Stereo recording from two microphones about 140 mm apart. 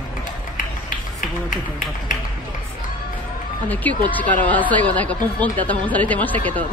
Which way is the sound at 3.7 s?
10° left (ahead or behind).